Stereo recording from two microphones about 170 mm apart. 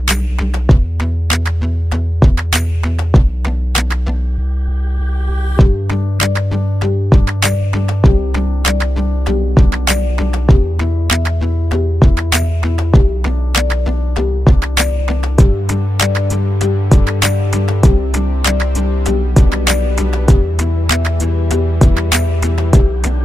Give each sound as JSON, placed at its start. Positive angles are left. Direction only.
{"t": 0.1, "sound": "music", "side_deg": 0}
{"t": 5.6, "sound": "music", "side_deg": 0}